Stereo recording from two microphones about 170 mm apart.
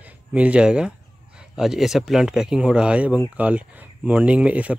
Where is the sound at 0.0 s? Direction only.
10° right (ahead or behind).